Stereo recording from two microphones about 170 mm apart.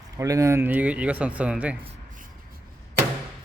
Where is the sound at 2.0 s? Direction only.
50° right (ahead or behind).